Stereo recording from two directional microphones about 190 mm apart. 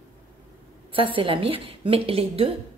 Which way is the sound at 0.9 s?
25° right (ahead or behind).